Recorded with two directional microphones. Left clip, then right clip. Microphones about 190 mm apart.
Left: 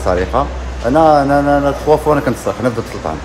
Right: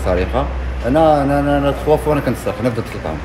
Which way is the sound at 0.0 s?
20° left (ahead or behind).